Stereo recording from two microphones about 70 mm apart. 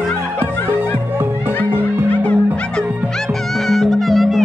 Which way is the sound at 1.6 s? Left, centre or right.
Left.